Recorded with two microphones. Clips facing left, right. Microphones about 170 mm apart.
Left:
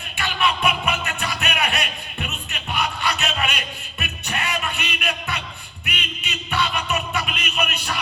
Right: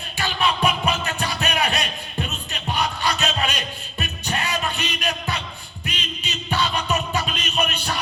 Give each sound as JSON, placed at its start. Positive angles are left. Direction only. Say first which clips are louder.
{"t": 0.2, "sound": "music", "louder": "right 1 dB", "side_deg": -35}